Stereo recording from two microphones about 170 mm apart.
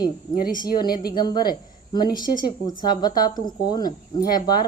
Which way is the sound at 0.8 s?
65° left (ahead or behind).